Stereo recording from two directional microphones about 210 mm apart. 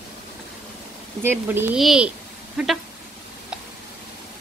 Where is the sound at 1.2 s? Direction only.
10° right (ahead or behind).